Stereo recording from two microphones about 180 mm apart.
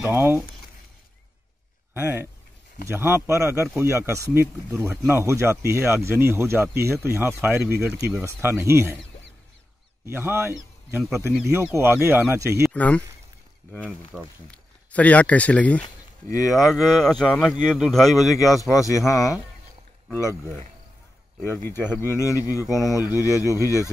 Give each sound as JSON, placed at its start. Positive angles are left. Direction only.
{"t": 0.0, "sound": "speech", "side_deg": -15}
{"t": 2.0, "sound": "speech", "side_deg": -10}
{"t": 10.0, "sound": "speech", "side_deg": -15}
{"t": 12.6, "sound": "speech", "side_deg": 10}
{"t": 15.8, "sound": "speech", "side_deg": 20}
{"t": 16.7, "sound": "speech", "side_deg": 0}
{"t": 18.3, "sound": "speech", "side_deg": 20}
{"t": 19.1, "sound": "speech", "side_deg": 0}
{"t": 20.1, "sound": "speech", "side_deg": 15}
{"t": 21.4, "sound": "speech", "side_deg": 10}